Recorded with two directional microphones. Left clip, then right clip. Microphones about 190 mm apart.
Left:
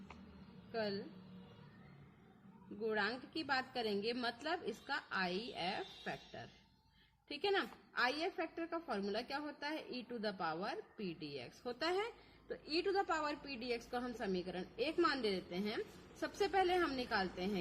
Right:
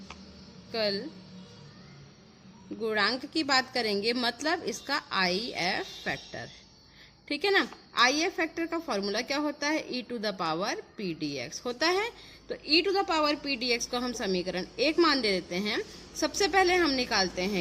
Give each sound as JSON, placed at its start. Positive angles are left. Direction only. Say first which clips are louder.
{"t": 0.7, "sound": "a woman's voice", "louder": "right 12 dB", "side_deg": -40}
{"t": 2.8, "sound": "a woman's voice", "louder": "right 11 dB", "side_deg": -40}